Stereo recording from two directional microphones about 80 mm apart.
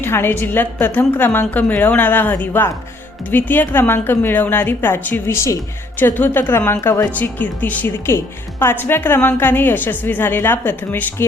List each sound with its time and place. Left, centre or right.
0.0 s a woman's voice: left
8.0 s a woman's voice: left